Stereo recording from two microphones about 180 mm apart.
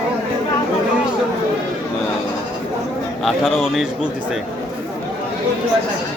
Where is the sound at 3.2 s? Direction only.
Centre (ahead or behind).